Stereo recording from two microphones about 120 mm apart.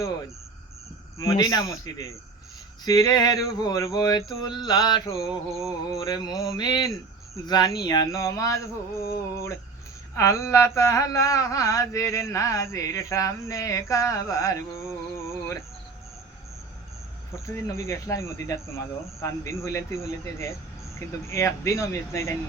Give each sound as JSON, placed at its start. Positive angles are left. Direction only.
{"t": 1.2, "sound": "mantra", "side_deg": 30}
{"t": 2.8, "sound": "a sound", "side_deg": 30}
{"t": 5.0, "sound": "mantra", "side_deg": 25}
{"t": 5.5, "sound": "music", "side_deg": 0}
{"t": 6.0, "sound": "mantra", "side_deg": 30}
{"t": 6.9, "sound": "speech", "side_deg": 30}
{"t": 7.9, "sound": "mantra", "side_deg": 30}
{"t": 10.2, "sound": "mantra", "side_deg": 25}
{"t": 17.3, "sound": "mantra", "side_deg": 25}